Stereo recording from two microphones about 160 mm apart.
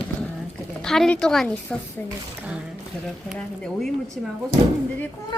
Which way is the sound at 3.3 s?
5° left (ahead or behind).